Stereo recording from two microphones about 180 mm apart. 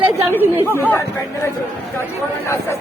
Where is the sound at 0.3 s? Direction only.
10° right (ahead or behind).